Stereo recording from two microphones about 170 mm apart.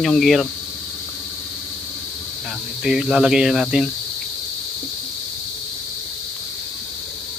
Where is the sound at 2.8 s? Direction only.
5° right (ahead or behind).